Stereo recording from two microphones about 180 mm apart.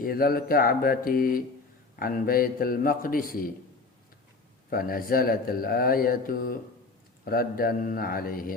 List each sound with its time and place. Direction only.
0.0 s speech: 55° left (ahead or behind)
4.7 s speech: 55° left (ahead or behind)